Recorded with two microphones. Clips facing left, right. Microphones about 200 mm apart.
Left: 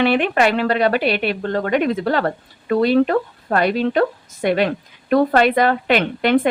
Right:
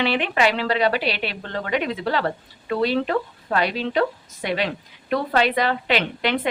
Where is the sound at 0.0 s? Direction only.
50° left (ahead or behind).